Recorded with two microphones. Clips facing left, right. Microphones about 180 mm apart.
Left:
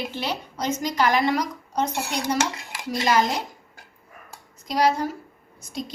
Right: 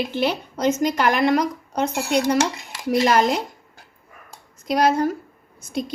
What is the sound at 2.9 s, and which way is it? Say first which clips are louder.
Speech: right 4 dB; 60° right (ahead or behind).